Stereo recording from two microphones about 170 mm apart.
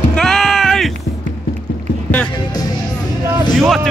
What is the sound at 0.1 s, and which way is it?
Music, 5° left (ahead or behind).